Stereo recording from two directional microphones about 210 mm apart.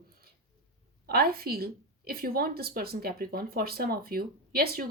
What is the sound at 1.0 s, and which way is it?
A woman's voice, 45° right (ahead or behind).